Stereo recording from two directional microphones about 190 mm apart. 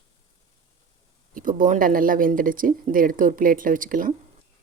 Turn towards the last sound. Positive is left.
turn(degrees=-45)  # may be behind; listen again after turning